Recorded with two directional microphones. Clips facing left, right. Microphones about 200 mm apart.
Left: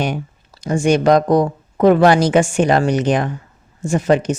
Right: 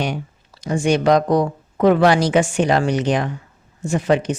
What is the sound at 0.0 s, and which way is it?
Speech, 50° left (ahead or behind).